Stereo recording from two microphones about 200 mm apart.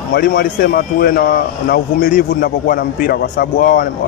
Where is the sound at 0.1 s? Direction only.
50° left (ahead or behind).